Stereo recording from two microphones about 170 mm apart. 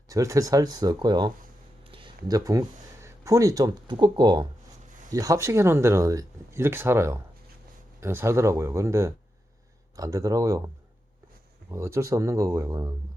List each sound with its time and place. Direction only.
0.1 s speech: 20° right (ahead or behind)
11.7 s speech: 15° right (ahead or behind)